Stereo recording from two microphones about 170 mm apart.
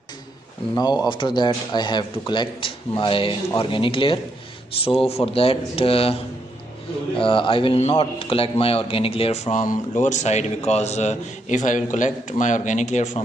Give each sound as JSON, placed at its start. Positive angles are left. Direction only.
{"t": 0.7, "sound": "a man's voice", "side_deg": 25}
{"t": 7.2, "sound": "a man's voice", "side_deg": 30}